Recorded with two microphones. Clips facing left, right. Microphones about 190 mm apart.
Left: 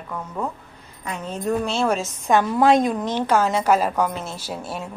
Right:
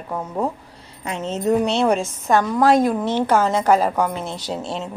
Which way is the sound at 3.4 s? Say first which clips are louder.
Right 1 dB; 10° left (ahead or behind).